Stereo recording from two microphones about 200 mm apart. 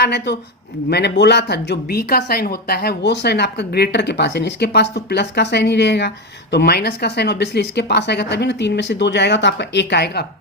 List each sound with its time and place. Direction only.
0.0 s speech: 55° left (ahead or behind)